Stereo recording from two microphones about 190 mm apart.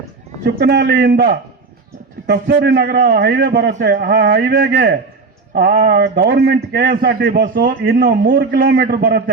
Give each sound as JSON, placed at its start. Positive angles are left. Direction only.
{"t": 0.4, "sound": "a man's voice", "side_deg": -60}